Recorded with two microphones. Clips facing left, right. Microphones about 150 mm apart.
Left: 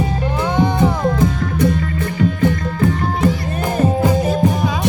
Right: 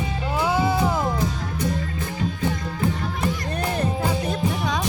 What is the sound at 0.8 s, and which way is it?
Music, 60° left (ahead or behind).